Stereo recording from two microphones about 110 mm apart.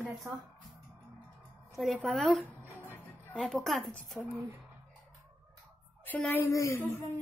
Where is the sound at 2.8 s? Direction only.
15° left (ahead or behind).